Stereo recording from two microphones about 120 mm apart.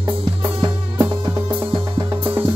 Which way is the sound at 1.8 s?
30° right (ahead or behind).